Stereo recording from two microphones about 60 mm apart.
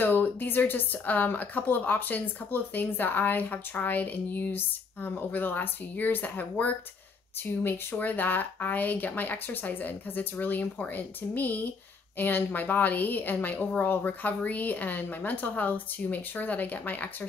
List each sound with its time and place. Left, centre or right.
0.0 s speech: left
7.6 s a woman's voice: left